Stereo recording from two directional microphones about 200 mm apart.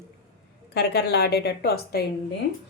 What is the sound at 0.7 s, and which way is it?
A woman's voice, 55° left (ahead or behind).